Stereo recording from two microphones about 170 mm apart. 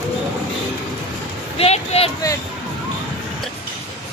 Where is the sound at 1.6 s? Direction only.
35° left (ahead or behind).